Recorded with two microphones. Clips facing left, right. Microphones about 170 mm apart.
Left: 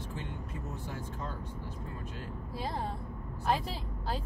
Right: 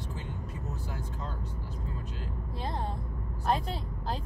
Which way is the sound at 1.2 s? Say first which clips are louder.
Even; 55° left (ahead or behind).